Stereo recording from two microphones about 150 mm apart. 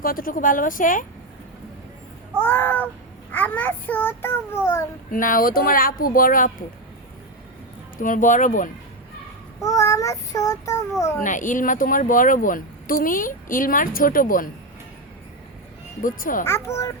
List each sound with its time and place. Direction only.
0.0 s speech: 70° left (ahead or behind)
2.4 s a child's voice: 15° left (ahead or behind)
5.1 s speech: 65° left (ahead or behind)
7.9 s speech: 60° left (ahead or behind)
9.6 s child singing: 20° left (ahead or behind)
11.2 s speech: 60° left (ahead or behind)
16.0 s speech: 65° left (ahead or behind)
16.4 s a child's voice: 20° left (ahead or behind)